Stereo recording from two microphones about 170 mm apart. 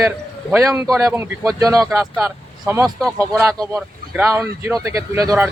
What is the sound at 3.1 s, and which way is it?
Speech, 15° right (ahead or behind).